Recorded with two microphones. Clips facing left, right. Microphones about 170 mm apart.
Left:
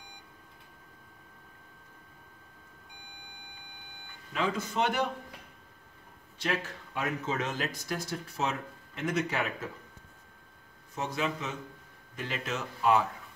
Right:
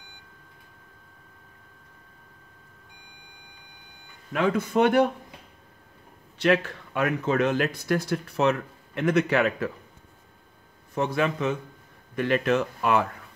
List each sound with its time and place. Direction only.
4.3 s speech: 55° right (ahead or behind)
6.3 s speech: 65° right (ahead or behind)
11.0 s speech: 60° right (ahead or behind)